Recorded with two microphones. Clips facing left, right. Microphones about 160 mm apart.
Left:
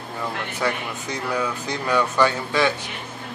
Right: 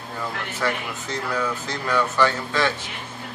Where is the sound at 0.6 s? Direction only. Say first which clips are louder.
Even; 15° left (ahead or behind).